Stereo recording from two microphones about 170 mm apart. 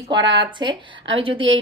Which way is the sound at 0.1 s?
90° right.